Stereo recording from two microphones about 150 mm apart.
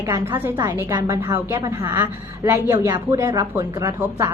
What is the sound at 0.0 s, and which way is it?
A woman's voice, 15° right (ahead or behind).